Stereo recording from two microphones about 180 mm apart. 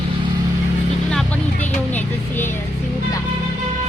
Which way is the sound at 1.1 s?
5° left (ahead or behind).